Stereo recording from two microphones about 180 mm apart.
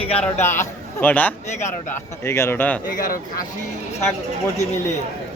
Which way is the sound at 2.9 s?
50° left (ahead or behind).